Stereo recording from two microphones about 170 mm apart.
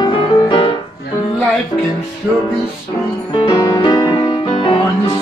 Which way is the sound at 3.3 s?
25° left (ahead or behind).